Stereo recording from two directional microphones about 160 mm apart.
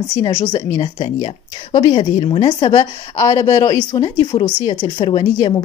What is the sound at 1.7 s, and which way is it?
A woman's voice, 25° left (ahead or behind).